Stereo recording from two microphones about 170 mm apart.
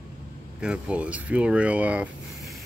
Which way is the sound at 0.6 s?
5° right (ahead or behind).